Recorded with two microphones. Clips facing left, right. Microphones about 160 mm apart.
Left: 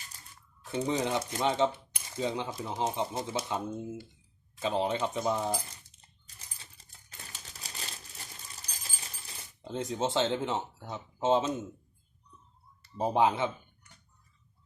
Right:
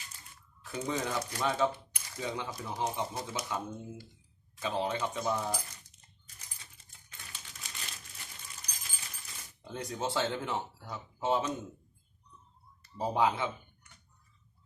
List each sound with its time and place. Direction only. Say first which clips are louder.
0.6 s a sound: left 5 dB; 30° left (ahead or behind)
0.9 s speech: left 3 dB; 20° left (ahead or behind)
6.4 s crumpling: left 2 dB; 30° left (ahead or behind)
8.7 s a sound: left 4 dB; 35° left (ahead or behind)
9.6 s speech: left 5 dB; 20° left (ahead or behind)
13.0 s speech: left 3 dB; 20° left (ahead or behind)